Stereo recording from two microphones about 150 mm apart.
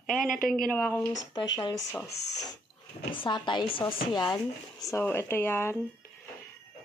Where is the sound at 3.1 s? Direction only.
30° left (ahead or behind).